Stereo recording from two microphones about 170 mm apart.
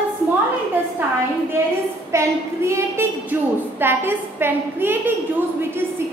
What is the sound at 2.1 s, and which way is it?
A woman's voice, 15° right (ahead or behind).